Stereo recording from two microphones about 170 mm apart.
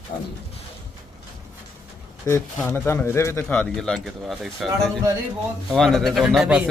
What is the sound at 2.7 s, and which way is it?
A man's voice, 15° left (ahead or behind).